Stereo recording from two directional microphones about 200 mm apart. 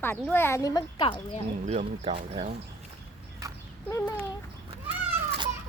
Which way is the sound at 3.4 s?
15° right (ahead or behind).